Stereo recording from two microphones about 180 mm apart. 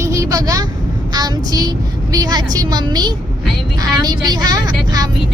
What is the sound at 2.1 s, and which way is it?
A woman's voice, 20° right (ahead or behind).